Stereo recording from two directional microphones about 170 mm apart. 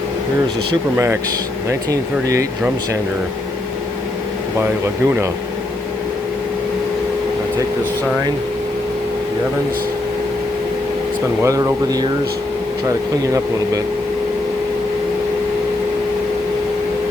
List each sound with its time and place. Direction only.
0.9 s speech: 15° right (ahead or behind)
4.6 s speech: 15° right (ahead or behind)
11.4 s speech: 20° right (ahead or behind)